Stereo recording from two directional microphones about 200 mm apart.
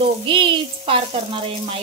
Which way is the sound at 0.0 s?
25° right (ahead or behind).